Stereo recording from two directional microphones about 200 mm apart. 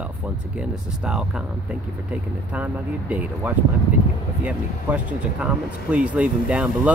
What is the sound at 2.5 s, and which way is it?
Speech, 5° right (ahead or behind).